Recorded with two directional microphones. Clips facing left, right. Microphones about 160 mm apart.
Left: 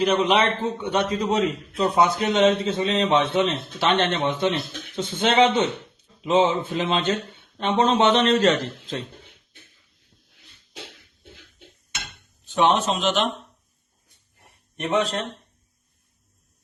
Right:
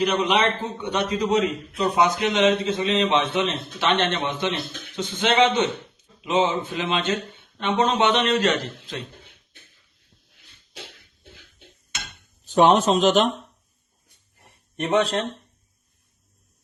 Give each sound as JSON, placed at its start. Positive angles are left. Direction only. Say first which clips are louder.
{"t": 0.2, "sound": "a man's voice", "louder": "left 1 dB", "side_deg": 30}
{"t": 12.5, "sound": "speech", "louder": "right 4 dB", "side_deg": -40}
{"t": 14.8, "sound": "speech", "louder": "right 2 dB", "side_deg": -35}